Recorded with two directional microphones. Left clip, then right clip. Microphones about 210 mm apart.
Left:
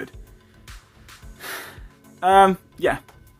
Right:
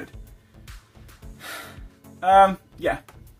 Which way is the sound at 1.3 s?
40° left (ahead or behind).